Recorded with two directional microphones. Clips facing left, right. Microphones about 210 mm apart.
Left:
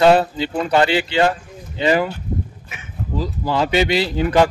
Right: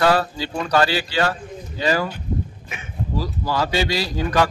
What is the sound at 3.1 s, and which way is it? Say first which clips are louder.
Speech: left 3 dB; 20° left (ahead or behind).